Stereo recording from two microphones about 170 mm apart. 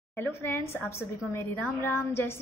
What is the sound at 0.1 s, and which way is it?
A woman's voice, 15° left (ahead or behind).